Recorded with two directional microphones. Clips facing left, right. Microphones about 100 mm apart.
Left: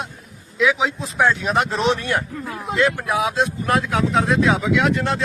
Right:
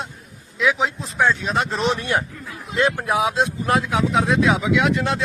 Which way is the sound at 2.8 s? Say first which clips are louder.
Even; 25° right (ahead or behind).